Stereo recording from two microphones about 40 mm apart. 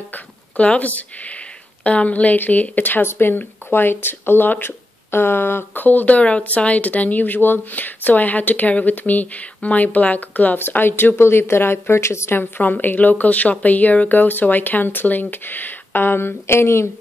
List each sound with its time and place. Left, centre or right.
0.6 s speech: left
2.8 s speech: left
5.8 s speech: left
10.7 s speech: left
12.4 s speech: left